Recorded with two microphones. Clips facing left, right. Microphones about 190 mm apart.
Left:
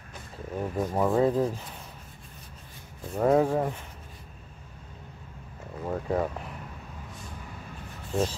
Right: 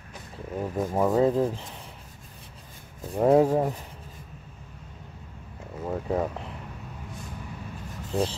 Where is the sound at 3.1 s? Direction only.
10° right (ahead or behind).